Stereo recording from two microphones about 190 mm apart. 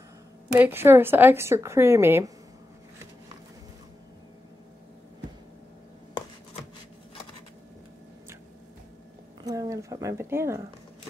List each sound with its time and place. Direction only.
0.6 s a woman's voice: 10° right (ahead or behind)
9.4 s a woman's voice: 20° right (ahead or behind)